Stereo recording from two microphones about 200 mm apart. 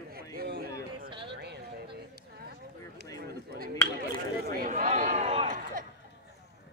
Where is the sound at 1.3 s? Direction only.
55° right (ahead or behind).